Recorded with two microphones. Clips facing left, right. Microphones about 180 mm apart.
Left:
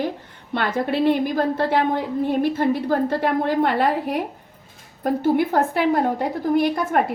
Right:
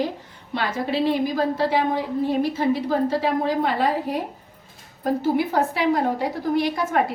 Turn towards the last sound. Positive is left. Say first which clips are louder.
# left 3 dB
turn(degrees=55)  # may be behind; listen again after turning